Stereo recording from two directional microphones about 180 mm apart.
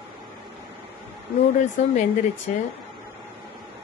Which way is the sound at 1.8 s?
40° left (ahead or behind).